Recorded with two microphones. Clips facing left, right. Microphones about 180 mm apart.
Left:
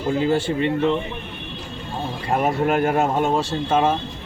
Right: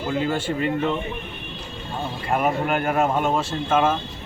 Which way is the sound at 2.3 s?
35° left (ahead or behind).